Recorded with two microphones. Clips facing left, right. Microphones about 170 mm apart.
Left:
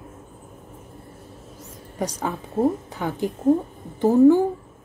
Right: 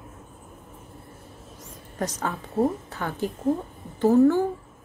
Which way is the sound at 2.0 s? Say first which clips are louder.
Left 2 dB; 10° left (ahead or behind).